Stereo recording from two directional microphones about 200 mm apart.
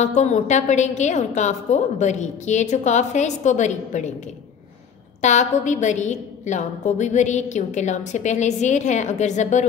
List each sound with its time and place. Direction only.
0.0 s a woman's voice: 35° left (ahead or behind)
5.2 s a woman's voice: 35° left (ahead or behind)